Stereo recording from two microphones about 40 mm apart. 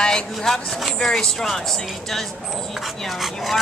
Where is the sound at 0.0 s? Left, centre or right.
Centre.